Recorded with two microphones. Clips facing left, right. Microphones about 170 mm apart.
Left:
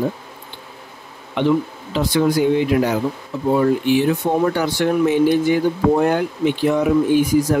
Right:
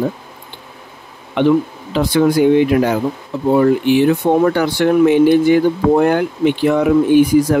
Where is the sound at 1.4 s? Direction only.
65° right (ahead or behind).